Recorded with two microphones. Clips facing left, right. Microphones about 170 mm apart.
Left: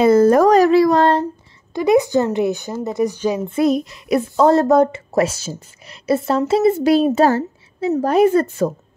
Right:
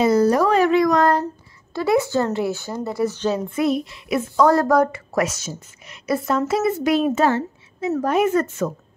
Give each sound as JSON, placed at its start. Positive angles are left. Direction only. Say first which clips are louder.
{"t": 0.0, "sound": "speech", "louder": "left 5 dB", "side_deg": 50}
{"t": 1.7, "sound": "speech", "louder": "left 4 dB", "side_deg": 15}
{"t": 3.4, "sound": "speech", "louder": "left 4 dB", "side_deg": 35}
{"t": 4.4, "sound": "a woman's voice", "louder": "left 3 dB", "side_deg": 25}
{"t": 7.2, "sound": "a sound", "louder": "left 4 dB", "side_deg": 35}
{"t": 8.0, "sound": "speech", "louder": "left 5 dB", "side_deg": 35}